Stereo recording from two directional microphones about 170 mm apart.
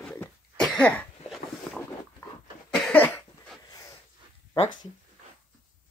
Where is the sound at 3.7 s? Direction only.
20° left (ahead or behind).